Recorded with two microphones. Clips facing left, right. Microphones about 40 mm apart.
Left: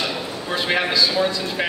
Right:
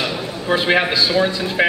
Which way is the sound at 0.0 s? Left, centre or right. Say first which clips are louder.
Right 3 dB; centre.